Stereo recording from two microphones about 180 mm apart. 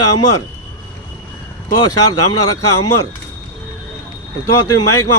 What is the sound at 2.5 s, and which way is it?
Speech, 20° left (ahead or behind).